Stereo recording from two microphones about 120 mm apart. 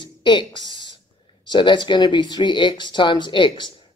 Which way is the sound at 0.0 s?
40° left (ahead or behind).